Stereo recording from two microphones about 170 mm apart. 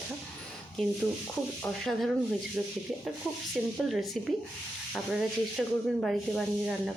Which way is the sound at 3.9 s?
Centre (ahead or behind).